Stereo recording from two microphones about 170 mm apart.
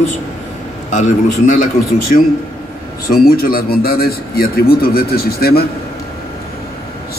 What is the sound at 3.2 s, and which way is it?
A man's voice, 60° left (ahead or behind).